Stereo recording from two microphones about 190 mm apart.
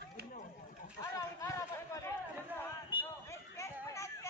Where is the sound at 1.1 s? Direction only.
15° left (ahead or behind).